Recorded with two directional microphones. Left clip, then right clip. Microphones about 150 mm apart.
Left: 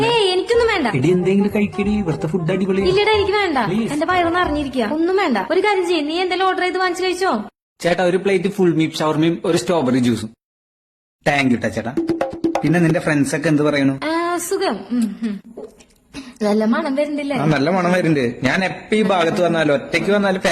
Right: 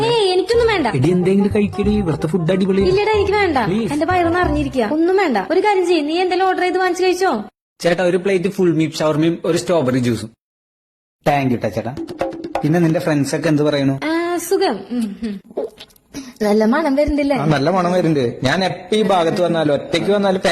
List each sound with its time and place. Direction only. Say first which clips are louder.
0.0 s music: right 1 dB; 25° right (ahead or behind)
1.2 s speech: right 2 dB; 20° right (ahead or behind)
7.8 s a man's voice: right 1 dB; 10° right (ahead or behind)
11.3 s speech: even; centre (ahead or behind)
12.7 s a man's voice: right 3 dB; 15° right (ahead or behind)
14.7 s speech: even; centre (ahead or behind)
16.4 s a woman's voice: right 3 dB; 35° right (ahead or behind)
17.3 s a man's voice: left 2 dB; 20° right (ahead or behind)